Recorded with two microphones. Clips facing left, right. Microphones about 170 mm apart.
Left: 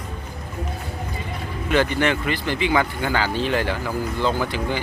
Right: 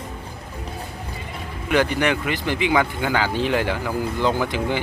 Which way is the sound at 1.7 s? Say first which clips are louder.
Even; 15° right (ahead or behind).